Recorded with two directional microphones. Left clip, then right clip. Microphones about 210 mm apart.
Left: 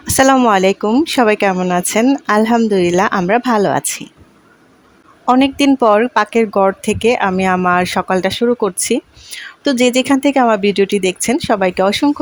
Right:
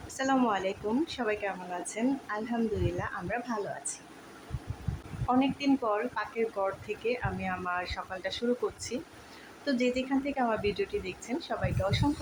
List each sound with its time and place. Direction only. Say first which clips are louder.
0.1 s speech: left 18 dB; 55° left (ahead or behind)
5.2 s speech: left 16 dB; 50° left (ahead or behind)